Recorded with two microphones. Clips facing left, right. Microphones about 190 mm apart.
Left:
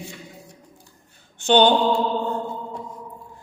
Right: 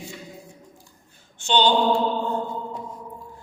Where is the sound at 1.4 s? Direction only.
55° left (ahead or behind).